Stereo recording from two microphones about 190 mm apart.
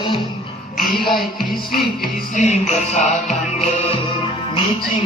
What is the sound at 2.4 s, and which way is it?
Music, 35° left (ahead or behind).